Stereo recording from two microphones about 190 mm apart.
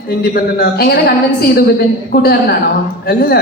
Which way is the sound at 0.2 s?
55° left (ahead or behind).